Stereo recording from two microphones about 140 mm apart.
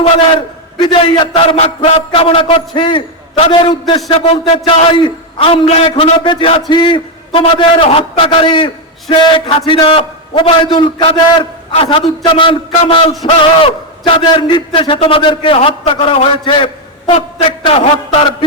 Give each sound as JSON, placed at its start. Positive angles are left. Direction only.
{"t": 0.8, "sound": "a man's voice", "side_deg": 35}
{"t": 17.7, "sound": "a man's voice", "side_deg": 40}